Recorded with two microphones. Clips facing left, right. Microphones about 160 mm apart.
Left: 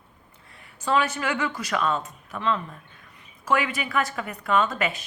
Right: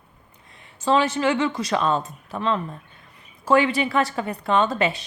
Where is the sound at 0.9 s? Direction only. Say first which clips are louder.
Right 5 dB; 25° right (ahead or behind).